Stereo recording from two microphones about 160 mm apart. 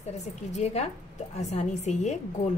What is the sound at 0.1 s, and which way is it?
A woman's voice, 45° left (ahead or behind).